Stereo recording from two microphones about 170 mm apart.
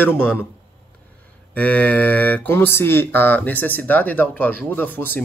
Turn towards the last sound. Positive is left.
turn(degrees=10)  # may be behind; listen again after turning